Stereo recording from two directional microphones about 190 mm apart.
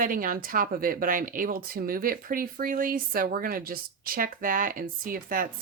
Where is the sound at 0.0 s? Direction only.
45° right (ahead or behind).